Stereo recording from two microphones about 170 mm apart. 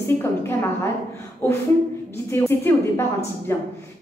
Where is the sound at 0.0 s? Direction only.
15° left (ahead or behind).